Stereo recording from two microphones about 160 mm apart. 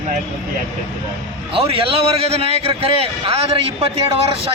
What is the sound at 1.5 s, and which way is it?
A man's voice, 35° right (ahead or behind).